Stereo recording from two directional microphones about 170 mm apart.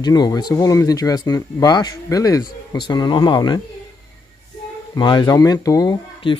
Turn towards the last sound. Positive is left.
turn(degrees=25)  # may be behind; listen again after turning